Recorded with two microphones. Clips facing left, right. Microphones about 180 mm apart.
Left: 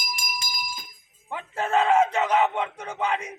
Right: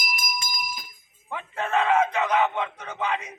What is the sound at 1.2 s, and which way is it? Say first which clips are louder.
Speech: left 1 dB; 30° left (ahead or behind).